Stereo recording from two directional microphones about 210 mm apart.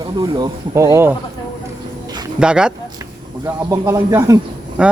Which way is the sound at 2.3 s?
5° right (ahead or behind).